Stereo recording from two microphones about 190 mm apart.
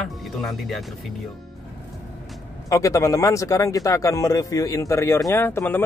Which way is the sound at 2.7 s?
15° left (ahead or behind).